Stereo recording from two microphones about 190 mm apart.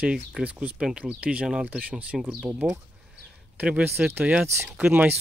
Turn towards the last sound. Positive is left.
turn(degrees=-5)  # may be behind; listen again after turning